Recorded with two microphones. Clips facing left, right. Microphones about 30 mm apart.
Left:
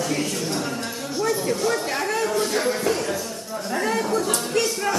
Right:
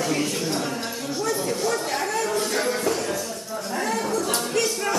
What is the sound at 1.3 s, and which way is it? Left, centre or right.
Chatter, centre.